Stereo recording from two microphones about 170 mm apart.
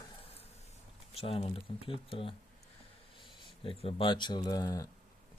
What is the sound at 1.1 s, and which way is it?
Speech, 35° left (ahead or behind).